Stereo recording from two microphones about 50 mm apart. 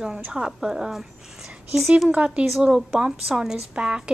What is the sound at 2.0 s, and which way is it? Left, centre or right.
Speech, right.